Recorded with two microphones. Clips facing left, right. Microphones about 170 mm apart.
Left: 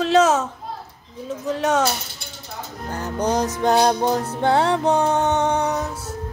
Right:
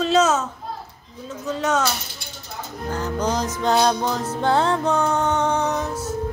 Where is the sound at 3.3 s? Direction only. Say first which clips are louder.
Left 3 dB; 60° left (ahead or behind).